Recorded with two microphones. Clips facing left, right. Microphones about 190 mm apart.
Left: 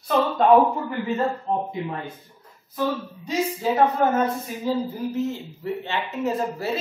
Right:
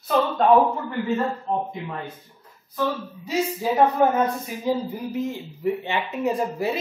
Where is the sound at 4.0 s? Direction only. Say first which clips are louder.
Right 1 dB; 15° right (ahead or behind).